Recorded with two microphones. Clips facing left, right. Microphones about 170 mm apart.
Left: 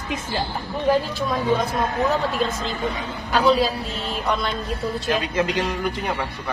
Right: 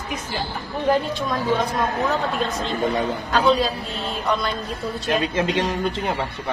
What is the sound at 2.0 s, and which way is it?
Speech, centre (ahead or behind).